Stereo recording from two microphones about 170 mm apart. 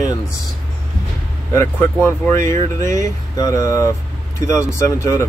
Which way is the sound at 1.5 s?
15° left (ahead or behind).